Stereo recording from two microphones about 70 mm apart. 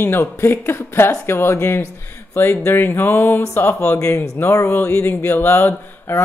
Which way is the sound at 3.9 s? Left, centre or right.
Left.